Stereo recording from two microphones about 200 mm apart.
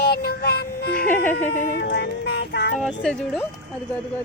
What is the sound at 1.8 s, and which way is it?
Speech, 55° left (ahead or behind).